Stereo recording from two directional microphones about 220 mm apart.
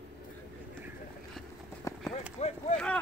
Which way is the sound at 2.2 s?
30° left (ahead or behind).